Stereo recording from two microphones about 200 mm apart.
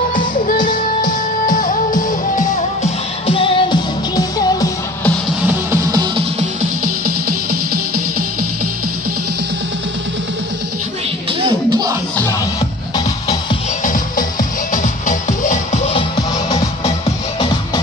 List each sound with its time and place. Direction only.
0.1 s music: 40° left (ahead or behind); by 4.6 s 20° left (ahead or behind)
5.4 s music: 10° right (ahead or behind)
7.1 s music: 45° right (ahead or behind)
11.4 s music: 20° right (ahead or behind)
12.9 s music: 20° left (ahead or behind)
13.8 s music: 40° left (ahead or behind)